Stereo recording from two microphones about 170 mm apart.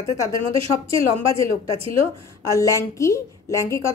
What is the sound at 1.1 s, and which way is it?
A woman's voice, 15° left (ahead or behind).